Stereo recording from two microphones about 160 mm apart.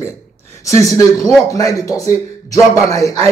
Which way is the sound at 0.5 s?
20° left (ahead or behind).